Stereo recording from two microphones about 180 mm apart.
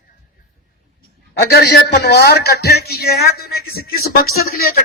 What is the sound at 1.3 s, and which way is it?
A man's voice, 60° left (ahead or behind).